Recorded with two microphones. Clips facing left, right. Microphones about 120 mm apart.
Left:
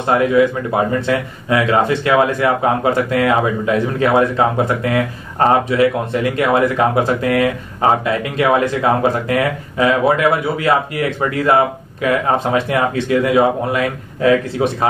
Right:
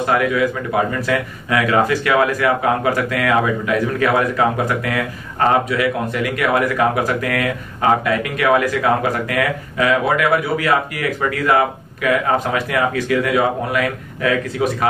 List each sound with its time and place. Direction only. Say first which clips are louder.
0.0 s speech: left 4 dB; 25° left (ahead or behind)